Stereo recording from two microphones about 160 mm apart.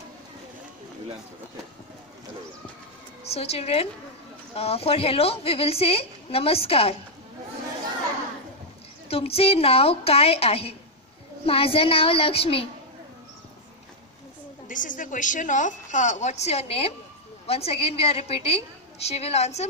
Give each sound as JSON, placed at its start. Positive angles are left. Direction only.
{"t": 3.3, "sound": "a woman's voice", "side_deg": 40}
{"t": 9.1, "sound": "a woman's voice", "side_deg": 40}
{"t": 14.7, "sound": "a woman's voice", "side_deg": 55}